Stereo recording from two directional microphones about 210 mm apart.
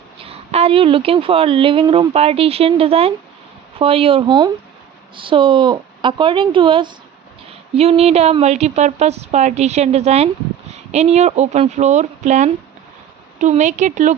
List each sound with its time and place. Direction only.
0.2 s a woman's voice: 30° right (ahead or behind)